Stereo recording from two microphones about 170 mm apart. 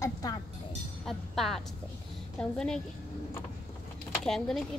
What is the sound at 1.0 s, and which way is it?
Speech, centre (ahead or behind).